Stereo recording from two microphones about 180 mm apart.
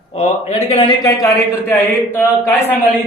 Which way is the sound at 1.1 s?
15° left (ahead or behind).